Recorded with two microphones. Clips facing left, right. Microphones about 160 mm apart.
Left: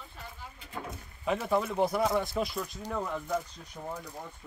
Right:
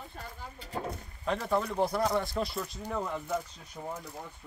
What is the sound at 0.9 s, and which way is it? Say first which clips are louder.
Speech: left 3 dB; 5° left (ahead or behind).